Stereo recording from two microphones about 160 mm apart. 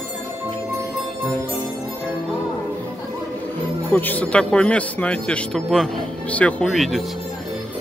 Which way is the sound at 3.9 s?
10° left (ahead or behind).